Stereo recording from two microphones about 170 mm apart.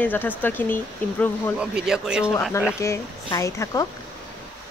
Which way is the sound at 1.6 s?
5° right (ahead or behind).